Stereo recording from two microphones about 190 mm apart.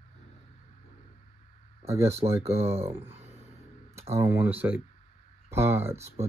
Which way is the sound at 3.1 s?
35° right (ahead or behind).